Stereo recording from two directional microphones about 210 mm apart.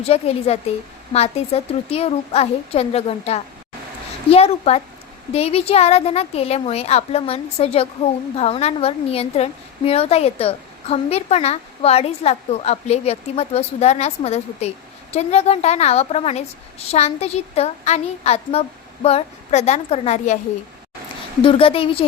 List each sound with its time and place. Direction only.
0.0 s a woman's voice: 30° left (ahead or behind)
21.4 s a woman's voice: 25° left (ahead or behind)